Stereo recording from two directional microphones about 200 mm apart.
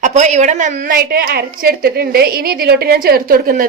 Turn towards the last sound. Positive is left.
turn(degrees=-45)  # may be behind; listen again after turning